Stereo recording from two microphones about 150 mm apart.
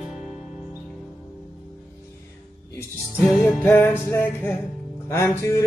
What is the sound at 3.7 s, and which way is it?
Music, 15° left (ahead or behind).